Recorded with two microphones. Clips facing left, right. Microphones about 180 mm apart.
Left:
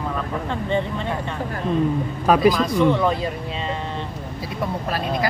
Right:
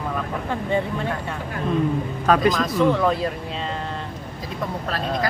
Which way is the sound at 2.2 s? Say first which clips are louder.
Left 2 dB; 10° left (ahead or behind).